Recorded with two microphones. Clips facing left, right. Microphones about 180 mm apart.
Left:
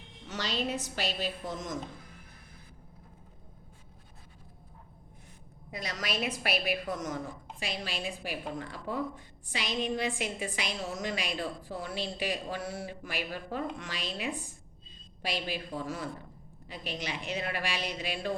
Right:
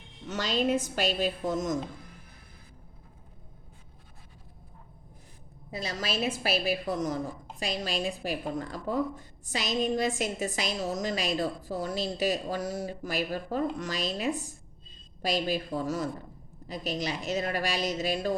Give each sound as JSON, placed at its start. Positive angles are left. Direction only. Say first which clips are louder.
{"t": 0.3, "sound": "a woman's voice", "louder": "right 6 dB", "side_deg": -50}
{"t": 5.7, "sound": "a woman's voice", "louder": "right 3 dB", "side_deg": -30}